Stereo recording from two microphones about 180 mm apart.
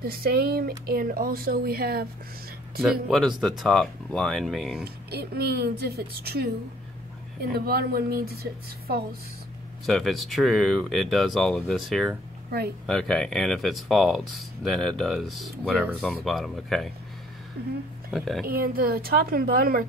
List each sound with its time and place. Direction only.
0.0 s speech: 55° right (ahead or behind)
2.8 s speech: centre (ahead or behind)
4.8 s speech: 60° right (ahead or behind)
7.5 s speech: 60° right (ahead or behind)
9.8 s speech: centre (ahead or behind)
12.4 s speech: 60° right (ahead or behind)
12.8 s speech: 5° left (ahead or behind)
18.1 s speech: centre (ahead or behind)
18.4 s speech: 55° right (ahead or behind)